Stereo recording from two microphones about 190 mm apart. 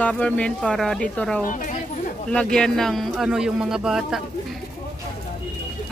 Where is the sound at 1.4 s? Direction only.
45° left (ahead or behind).